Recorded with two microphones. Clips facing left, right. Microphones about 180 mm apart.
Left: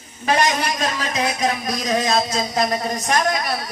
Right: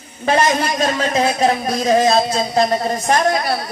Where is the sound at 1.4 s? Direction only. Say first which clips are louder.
Right 6 dB; 30° right (ahead or behind).